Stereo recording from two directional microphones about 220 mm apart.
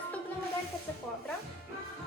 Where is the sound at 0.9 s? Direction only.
10° left (ahead or behind).